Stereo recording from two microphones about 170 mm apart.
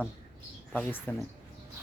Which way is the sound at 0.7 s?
10° left (ahead or behind).